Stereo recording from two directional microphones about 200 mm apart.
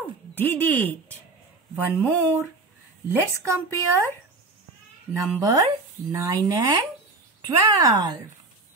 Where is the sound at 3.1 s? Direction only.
10° right (ahead or behind).